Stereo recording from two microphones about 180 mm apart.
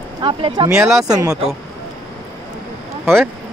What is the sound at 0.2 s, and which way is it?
Speech, 25° right (ahead or behind).